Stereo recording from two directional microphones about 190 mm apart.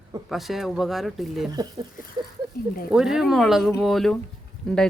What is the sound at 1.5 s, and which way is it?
Speech, 20° right (ahead or behind).